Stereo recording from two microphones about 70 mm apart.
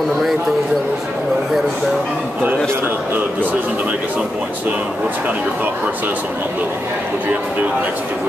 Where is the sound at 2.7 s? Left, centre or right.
Right.